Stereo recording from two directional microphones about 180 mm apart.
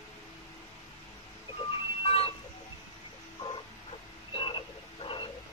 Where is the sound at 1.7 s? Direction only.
30° left (ahead or behind).